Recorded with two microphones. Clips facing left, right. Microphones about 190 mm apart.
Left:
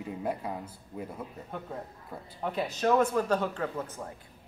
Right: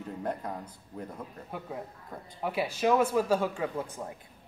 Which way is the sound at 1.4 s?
5° right (ahead or behind).